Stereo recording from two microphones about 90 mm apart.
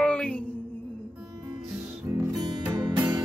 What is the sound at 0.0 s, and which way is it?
Music, 10° left (ahead or behind).